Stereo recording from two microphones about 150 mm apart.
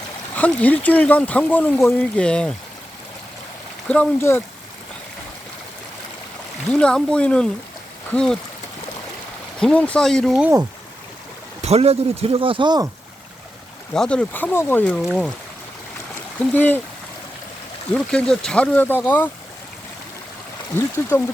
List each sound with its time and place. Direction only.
0.3 s speech: 10° left (ahead or behind)
3.8 s speech: 10° left (ahead or behind)
6.7 s speech: 5° left (ahead or behind)
9.6 s speech: 5° left (ahead or behind)
11.6 s speech: 45° right (ahead or behind); by 12.9 s 30° right (ahead or behind)
13.9 s speech: 5° left (ahead or behind)
15.0 s speech: 5° right (ahead or behind)
16.4 s speech: 15° left (ahead or behind)
17.9 s speech: 5° left (ahead or behind)